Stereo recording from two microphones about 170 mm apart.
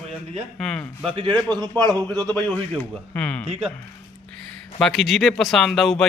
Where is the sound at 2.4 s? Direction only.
10° left (ahead or behind).